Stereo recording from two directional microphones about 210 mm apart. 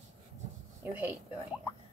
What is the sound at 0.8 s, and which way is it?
Speech, 10° right (ahead or behind).